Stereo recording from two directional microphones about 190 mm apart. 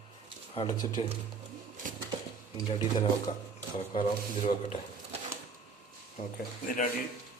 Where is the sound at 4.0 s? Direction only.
40° left (ahead or behind).